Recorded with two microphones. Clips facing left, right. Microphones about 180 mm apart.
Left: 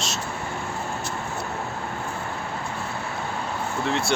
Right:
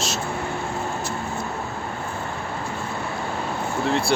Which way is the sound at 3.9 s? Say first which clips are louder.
Right 3 dB; centre (ahead or behind).